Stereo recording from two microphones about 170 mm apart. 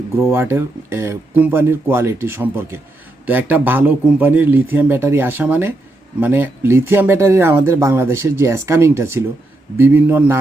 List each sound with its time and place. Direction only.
0.3 s speech: 15° right (ahead or behind)